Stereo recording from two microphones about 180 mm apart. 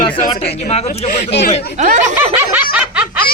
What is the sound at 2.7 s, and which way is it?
Snicker, 5° right (ahead or behind).